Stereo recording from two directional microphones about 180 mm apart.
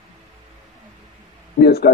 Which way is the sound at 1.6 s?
60° left (ahead or behind).